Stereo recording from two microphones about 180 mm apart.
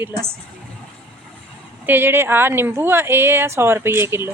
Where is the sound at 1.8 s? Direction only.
10° right (ahead or behind).